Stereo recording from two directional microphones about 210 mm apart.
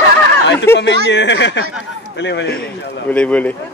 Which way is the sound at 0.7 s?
55° left (ahead or behind).